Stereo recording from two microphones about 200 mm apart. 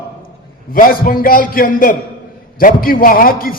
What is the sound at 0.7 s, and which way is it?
A man's voice, 45° left (ahead or behind).